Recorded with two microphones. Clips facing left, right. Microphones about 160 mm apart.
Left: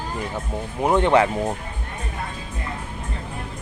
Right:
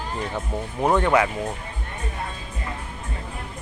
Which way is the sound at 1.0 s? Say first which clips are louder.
Left 4 dB; 20° left (ahead or behind).